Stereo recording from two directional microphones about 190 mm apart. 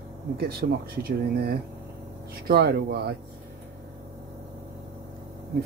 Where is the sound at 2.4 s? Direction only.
60° right (ahead or behind).